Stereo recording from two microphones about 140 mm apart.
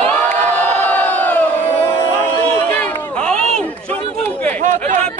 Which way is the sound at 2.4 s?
10° left (ahead or behind).